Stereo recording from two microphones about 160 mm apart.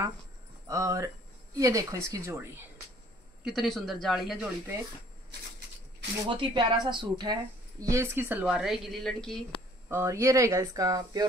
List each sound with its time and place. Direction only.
0.7 s speech: 20° right (ahead or behind)
3.4 s a woman's voice: centre (ahead or behind)
6.2 s speech: 30° right (ahead or behind)
7.8 s a woman's voice: 15° right (ahead or behind); by 9.4 s centre (ahead or behind)
9.8 s speech: 15° right (ahead or behind)